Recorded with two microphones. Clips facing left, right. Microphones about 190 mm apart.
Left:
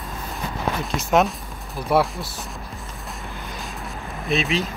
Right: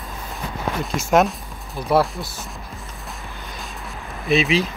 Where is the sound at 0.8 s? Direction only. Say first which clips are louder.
Right 2 dB; centre (ahead or behind).